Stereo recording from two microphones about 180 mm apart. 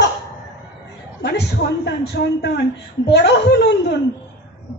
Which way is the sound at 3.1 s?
75° left (ahead or behind).